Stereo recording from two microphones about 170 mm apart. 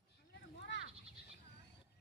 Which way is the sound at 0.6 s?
90° left.